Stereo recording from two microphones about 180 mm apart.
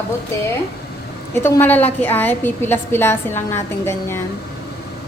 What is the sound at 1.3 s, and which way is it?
A woman's voice, 15° left (ahead or behind).